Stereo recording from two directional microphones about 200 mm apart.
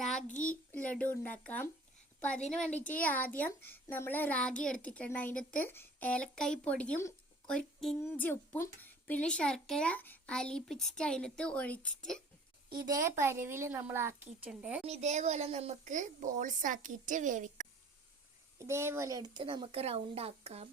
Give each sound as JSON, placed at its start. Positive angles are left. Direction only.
{"t": 0.0, "sound": "a sound", "side_deg": 5}
{"t": 0.5, "sound": "speech", "side_deg": 10}
{"t": 2.9, "sound": "a child's voice", "side_deg": 10}
{"t": 12.7, "sound": "a woman's voice", "side_deg": -20}
{"t": 14.8, "sound": "a woman's voice", "side_deg": -35}
{"t": 18.6, "sound": "speech", "side_deg": -15}